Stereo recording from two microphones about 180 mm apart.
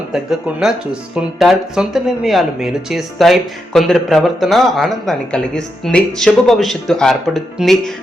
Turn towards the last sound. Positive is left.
turn(degrees=0)  # may be behind; listen again after turning